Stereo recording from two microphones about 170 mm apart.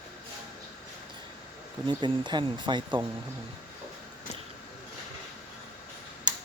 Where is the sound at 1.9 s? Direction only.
25° right (ahead or behind).